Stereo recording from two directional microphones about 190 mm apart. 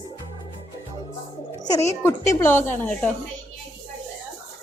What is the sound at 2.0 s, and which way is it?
Speech, 15° left (ahead or behind).